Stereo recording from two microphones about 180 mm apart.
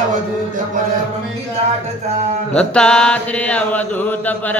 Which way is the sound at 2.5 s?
5° left (ahead or behind).